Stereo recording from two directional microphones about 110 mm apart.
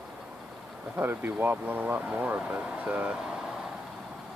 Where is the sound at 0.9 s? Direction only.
15° right (ahead or behind).